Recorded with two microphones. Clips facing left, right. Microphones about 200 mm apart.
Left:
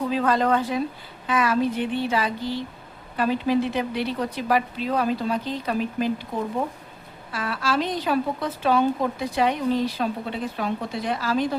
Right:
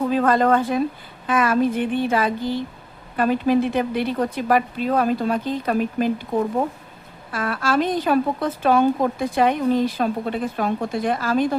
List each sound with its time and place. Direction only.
0.1 s a woman's voice: 50° right (ahead or behind)